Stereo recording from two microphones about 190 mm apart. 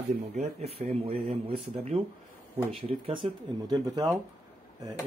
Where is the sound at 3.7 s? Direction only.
20° right (ahead or behind).